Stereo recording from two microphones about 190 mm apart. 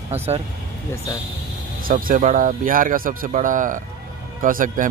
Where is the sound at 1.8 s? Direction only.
50° right (ahead or behind).